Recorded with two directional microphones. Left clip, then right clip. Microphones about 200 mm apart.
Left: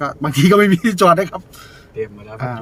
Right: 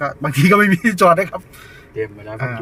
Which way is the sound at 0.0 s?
Centre (ahead or behind).